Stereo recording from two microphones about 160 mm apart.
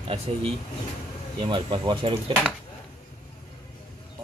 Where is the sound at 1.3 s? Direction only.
30° right (ahead or behind).